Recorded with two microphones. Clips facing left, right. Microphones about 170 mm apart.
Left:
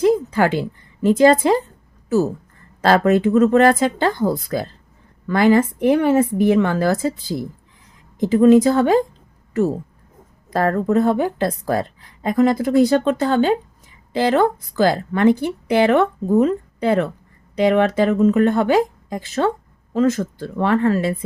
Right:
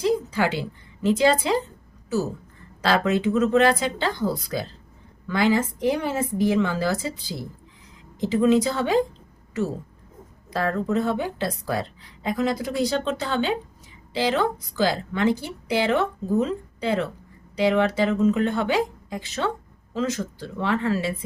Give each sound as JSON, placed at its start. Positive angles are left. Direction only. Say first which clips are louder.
{"t": 0.0, "sound": "a woman's voice", "louder": "left 6 dB", "side_deg": 50}
{"t": 2.8, "sound": "a woman's voice", "louder": "left 6 dB", "side_deg": 50}
{"t": 10.5, "sound": "a woman's voice", "louder": "left 6 dB", "side_deg": 50}